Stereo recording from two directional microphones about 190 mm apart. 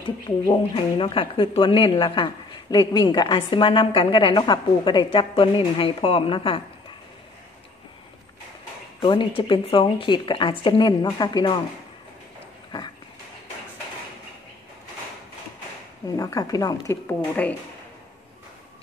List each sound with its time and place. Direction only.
0.0 s speech: 25° left (ahead or behind)
9.0 s speech: 25° left (ahead or behind)
16.2 s speech: 20° left (ahead or behind)